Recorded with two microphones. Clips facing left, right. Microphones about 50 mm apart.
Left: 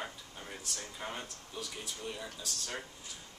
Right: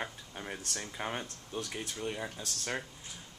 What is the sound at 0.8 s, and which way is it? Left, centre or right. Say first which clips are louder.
Speech: right 5 dB; right.